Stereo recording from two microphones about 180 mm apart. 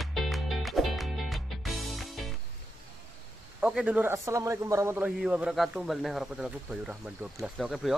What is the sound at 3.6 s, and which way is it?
A man's voice, 5° right (ahead or behind).